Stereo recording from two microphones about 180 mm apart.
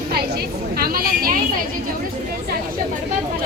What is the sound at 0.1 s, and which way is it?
A woman's voice, 60° right (ahead or behind).